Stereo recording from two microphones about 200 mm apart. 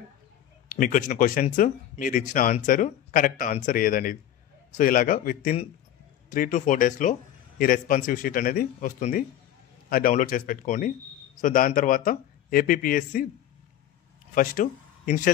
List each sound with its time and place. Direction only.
0.7 s speech: 40° left (ahead or behind)
14.3 s speech: 40° left (ahead or behind)